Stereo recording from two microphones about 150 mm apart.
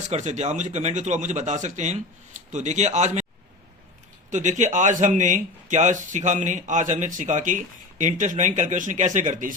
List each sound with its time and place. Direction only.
0.1 s speech: 50° right (ahead or behind)
4.3 s speech: 55° right (ahead or behind)